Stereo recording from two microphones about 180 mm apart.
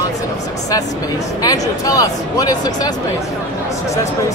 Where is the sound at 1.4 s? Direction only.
20° left (ahead or behind).